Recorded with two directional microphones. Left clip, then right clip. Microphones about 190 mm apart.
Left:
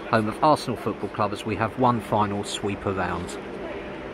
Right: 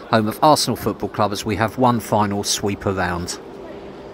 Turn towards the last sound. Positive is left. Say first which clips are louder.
# right 5 dB
turn(degrees=-35)  # may be behind; listen again after turning